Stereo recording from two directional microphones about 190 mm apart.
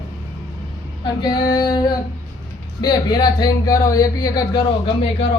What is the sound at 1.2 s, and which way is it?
Speech, 20° left (ahead or behind).